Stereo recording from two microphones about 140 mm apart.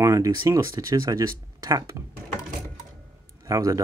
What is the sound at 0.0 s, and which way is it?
Speech, 20° right (ahead or behind).